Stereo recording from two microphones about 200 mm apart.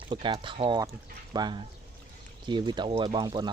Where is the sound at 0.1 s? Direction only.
25° right (ahead or behind).